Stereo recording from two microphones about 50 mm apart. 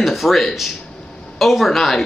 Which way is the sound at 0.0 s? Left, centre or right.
Centre.